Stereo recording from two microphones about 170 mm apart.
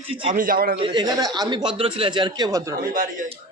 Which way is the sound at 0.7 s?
30° right (ahead or behind).